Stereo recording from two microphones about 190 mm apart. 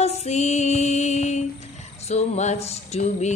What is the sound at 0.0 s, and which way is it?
Music, 35° left (ahead or behind).